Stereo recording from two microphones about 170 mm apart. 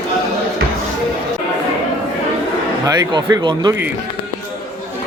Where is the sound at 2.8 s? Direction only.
20° right (ahead or behind).